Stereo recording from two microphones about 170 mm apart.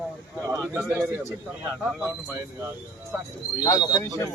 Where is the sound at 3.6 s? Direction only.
25° left (ahead or behind).